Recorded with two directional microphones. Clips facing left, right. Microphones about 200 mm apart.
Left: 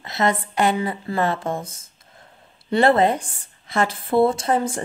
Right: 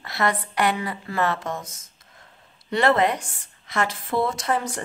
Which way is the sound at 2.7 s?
30° left (ahead or behind).